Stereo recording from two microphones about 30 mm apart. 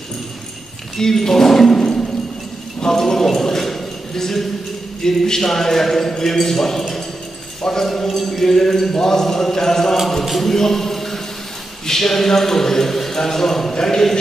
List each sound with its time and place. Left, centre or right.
0.9 s a man's voice: centre
2.8 s a sound: centre
5.0 s a man's voice: centre
8.3 s a man's voice: centre